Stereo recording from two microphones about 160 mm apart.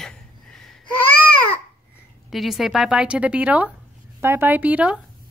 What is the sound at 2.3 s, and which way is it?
A woman's voice, centre (ahead or behind).